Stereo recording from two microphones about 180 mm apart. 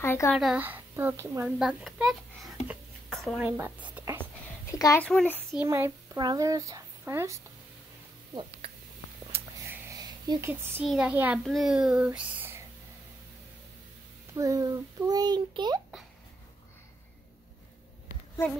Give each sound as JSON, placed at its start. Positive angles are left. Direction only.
{"t": 0.0, "sound": "a child's voice", "side_deg": 15}
{"t": 0.3, "sound": "a woman's voice", "side_deg": -5}
{"t": 1.6, "sound": "a child's voice", "side_deg": -5}
{"t": 3.1, "sound": "a sound", "side_deg": 0}
{"t": 3.3, "sound": "a woman's voice", "side_deg": -10}
{"t": 4.2, "sound": "a sound", "side_deg": 15}
{"t": 5.0, "sound": "a child's voice", "side_deg": 5}
{"t": 5.6, "sound": "a child's voice", "side_deg": -15}
{"t": 9.7, "sound": "a sound", "side_deg": -20}
{"t": 10.5, "sound": "a woman's voice", "side_deg": -10}
{"t": 14.3, "sound": "a child's voice", "side_deg": -15}